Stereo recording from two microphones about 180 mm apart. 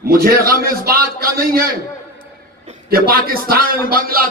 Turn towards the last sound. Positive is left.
turn(degrees=-55)  # may be behind; listen again after turning